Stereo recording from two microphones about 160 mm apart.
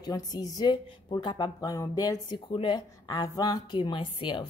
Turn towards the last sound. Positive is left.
turn(degrees=30)  # may be behind; listen again after turning